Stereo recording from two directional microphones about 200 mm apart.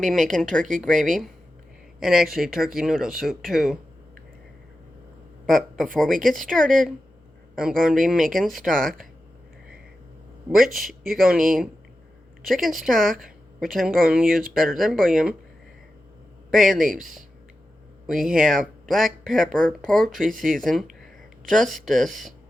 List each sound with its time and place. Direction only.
0.0 s speech: centre (ahead or behind)
5.5 s speech: centre (ahead or behind)
10.5 s speech: centre (ahead or behind)
16.5 s speech: centre (ahead or behind)